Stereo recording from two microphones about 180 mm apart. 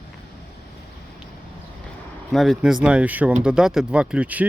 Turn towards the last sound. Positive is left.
turn(degrees=-5)  # may be behind; listen again after turning